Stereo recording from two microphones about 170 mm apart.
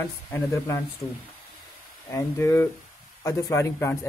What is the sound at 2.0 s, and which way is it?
Speech, 15° left (ahead or behind).